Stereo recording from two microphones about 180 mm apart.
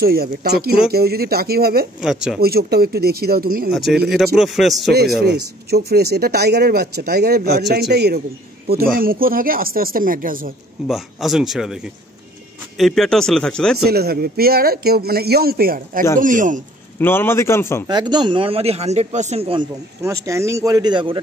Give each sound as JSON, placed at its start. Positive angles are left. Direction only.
{"t": 0.0, "sound": "speech", "side_deg": -60}
{"t": 2.0, "sound": "speech", "side_deg": -5}
{"t": 2.4, "sound": "speech", "side_deg": -60}
{"t": 3.7, "sound": "speech", "side_deg": 0}
{"t": 5.2, "sound": "speech", "side_deg": -60}
{"t": 10.9, "sound": "speech", "side_deg": 0}
{"t": 13.8, "sound": "speech", "side_deg": -60}
{"t": 17.0, "sound": "a man's voice", "side_deg": 10}
{"t": 17.8, "sound": "speech", "side_deg": -25}
{"t": 20.2, "sound": "a man's voice", "side_deg": -15}